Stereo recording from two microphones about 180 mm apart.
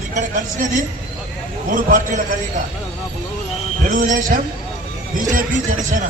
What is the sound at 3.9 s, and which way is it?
Speech, 45° right (ahead or behind).